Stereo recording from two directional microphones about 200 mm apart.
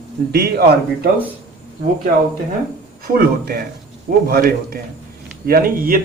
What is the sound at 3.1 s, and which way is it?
A man's voice, 50° right (ahead or behind).